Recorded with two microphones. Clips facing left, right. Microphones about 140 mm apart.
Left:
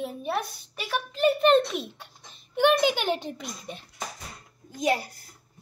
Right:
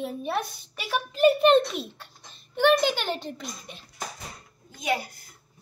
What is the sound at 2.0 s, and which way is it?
Speech, 15° left (ahead or behind).